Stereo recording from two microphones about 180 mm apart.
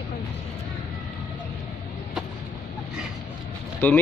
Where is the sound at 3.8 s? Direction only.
10° left (ahead or behind).